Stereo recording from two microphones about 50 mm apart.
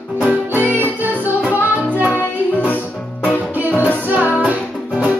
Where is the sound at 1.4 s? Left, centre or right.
Right.